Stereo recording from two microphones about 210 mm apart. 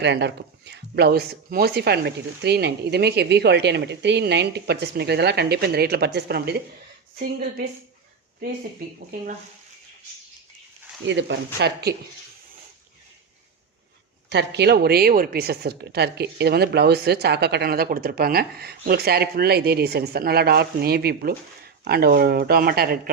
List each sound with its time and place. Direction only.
0.0 s a woman's voice: 55° right (ahead or behind)
11.0 s speech: 60° right (ahead or behind)
14.3 s a woman's voice: 55° right (ahead or behind)